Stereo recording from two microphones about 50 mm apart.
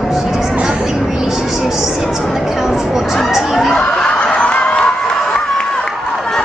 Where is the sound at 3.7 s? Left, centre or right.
Centre.